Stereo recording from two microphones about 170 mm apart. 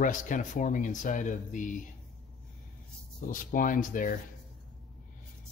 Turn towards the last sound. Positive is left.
turn(degrees=50)  # may be behind; listen again after turning